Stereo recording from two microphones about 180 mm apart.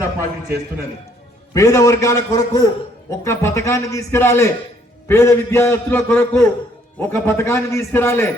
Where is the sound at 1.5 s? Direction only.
20° left (ahead or behind).